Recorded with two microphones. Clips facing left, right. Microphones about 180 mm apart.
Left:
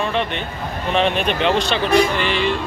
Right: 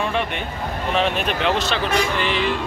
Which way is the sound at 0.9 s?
5° right (ahead or behind).